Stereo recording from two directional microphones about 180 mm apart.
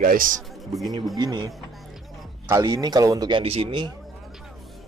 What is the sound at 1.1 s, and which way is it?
Speech, 25° right (ahead or behind).